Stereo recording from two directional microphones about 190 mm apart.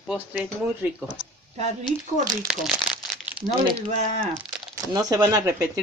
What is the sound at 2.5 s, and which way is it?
Speech, 5° right (ahead or behind).